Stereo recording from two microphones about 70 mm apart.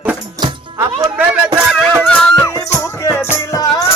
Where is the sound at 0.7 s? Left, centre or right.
Right.